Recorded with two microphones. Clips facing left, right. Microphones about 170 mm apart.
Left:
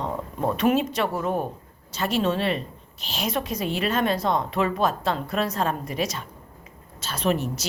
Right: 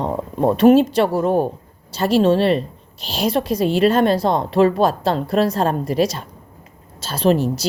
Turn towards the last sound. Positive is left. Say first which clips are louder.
# right 8 dB
turn(degrees=-35)  # may be behind; listen again after turning